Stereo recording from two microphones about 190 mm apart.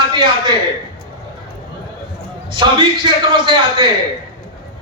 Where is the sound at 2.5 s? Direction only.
25° right (ahead or behind).